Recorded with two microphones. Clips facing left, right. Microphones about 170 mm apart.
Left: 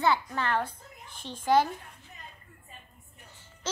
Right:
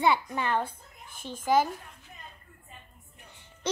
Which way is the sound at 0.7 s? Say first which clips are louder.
Left 1 dB; 50° right (ahead or behind).